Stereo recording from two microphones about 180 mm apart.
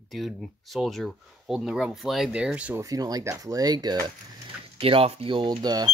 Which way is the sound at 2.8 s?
20° right (ahead or behind).